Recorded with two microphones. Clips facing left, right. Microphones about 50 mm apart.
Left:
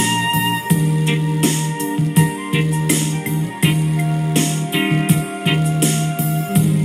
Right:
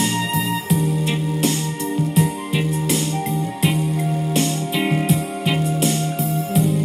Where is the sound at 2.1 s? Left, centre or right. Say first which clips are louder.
Left 3 dB; left.